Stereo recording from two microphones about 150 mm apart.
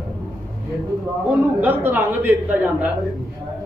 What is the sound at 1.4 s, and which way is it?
A man's voice, 10° right (ahead or behind).